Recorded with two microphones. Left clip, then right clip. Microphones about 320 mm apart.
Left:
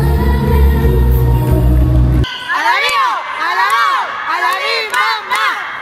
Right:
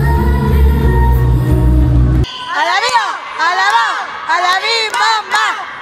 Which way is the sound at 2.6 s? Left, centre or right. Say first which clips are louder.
Even; right.